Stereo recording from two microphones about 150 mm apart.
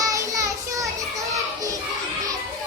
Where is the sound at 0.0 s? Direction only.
20° right (ahead or behind).